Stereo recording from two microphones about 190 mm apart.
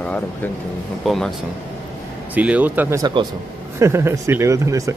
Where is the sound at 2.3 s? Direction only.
10° right (ahead or behind).